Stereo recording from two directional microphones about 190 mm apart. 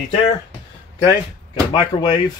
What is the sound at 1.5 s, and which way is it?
Speech, 25° left (ahead or behind).